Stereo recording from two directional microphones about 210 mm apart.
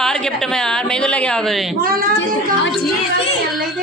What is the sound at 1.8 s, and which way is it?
Speech, 45° right (ahead or behind).